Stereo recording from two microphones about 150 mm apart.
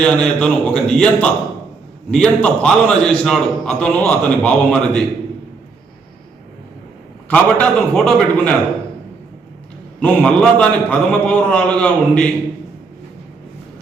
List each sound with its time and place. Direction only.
0.0 s a man's voice: 5° left (ahead or behind)
7.3 s a man's voice: 5° left (ahead or behind)
10.0 s a man's voice: 5° left (ahead or behind)